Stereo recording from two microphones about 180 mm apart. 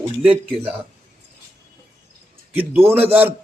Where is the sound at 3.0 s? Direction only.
10° right (ahead or behind).